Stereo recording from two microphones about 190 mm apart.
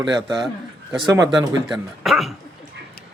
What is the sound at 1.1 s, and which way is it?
Speech, 20° right (ahead or behind).